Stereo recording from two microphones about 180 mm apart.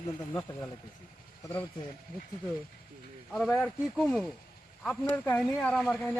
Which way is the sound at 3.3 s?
Centre (ahead or behind).